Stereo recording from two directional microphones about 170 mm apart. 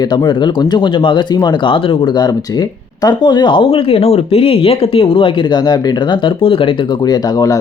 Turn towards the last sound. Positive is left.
turn(degrees=20)  # may be behind; listen again after turning